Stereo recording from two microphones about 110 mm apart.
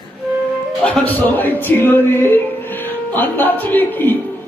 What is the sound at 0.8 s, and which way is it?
A man's voice, 15° left (ahead or behind).